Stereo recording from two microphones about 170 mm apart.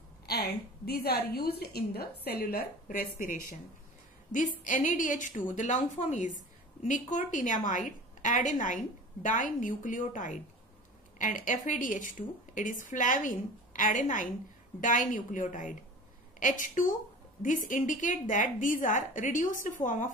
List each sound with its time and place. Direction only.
0.3 s a woman's voice: 70° left (ahead or behind); by 20.1 s 50° left (ahead or behind)